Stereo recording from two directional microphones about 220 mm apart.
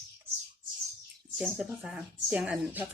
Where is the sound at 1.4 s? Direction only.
5° right (ahead or behind).